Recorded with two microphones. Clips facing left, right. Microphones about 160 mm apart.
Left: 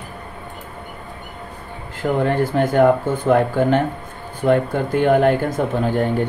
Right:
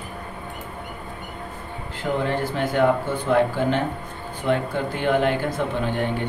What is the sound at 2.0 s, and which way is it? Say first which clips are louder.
Speech: left 5 dB; 45° left (ahead or behind).